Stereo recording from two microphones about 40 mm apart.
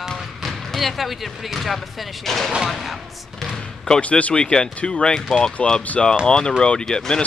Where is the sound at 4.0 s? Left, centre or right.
Left; by 7.2 s centre.